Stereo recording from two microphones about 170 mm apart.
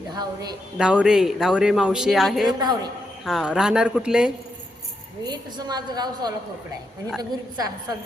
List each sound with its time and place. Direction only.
0.8 s speech: 5° right (ahead or behind)
5.2 s a woman's voice: 25° right (ahead or behind)